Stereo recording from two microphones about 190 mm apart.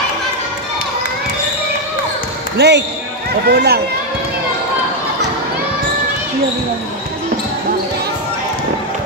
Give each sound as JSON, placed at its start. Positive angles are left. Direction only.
{"t": 2.5, "sound": "speech", "side_deg": -65}